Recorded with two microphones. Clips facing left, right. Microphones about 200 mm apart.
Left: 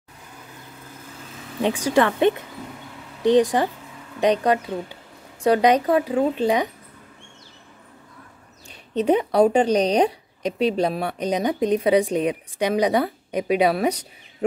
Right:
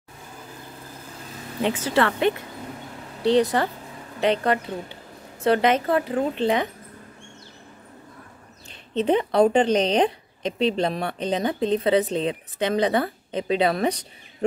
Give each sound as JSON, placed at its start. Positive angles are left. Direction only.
{"t": 1.8, "sound": "speech", "side_deg": 15}
{"t": 8.6, "sound": "speech", "side_deg": 10}